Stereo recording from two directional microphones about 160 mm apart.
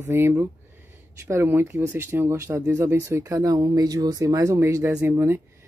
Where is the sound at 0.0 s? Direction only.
15° right (ahead or behind).